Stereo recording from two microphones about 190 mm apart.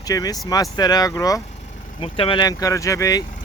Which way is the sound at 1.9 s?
30° left (ahead or behind).